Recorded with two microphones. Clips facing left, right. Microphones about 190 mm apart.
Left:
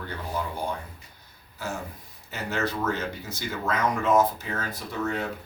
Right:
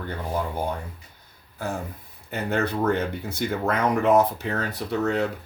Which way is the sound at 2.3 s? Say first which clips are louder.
Right 4 dB; 60° right (ahead or behind).